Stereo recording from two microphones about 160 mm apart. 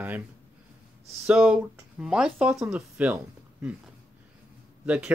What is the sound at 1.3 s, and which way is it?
Speech, 5° right (ahead or behind).